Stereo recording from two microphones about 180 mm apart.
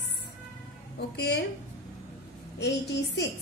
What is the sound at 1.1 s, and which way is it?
Speech, 65° left (ahead or behind).